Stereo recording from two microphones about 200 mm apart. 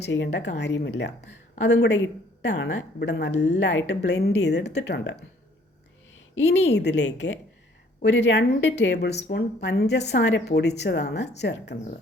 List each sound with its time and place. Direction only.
0.0 s a woman's voice: 65° left (ahead or behind)
6.1 s a woman's voice: 70° left (ahead or behind)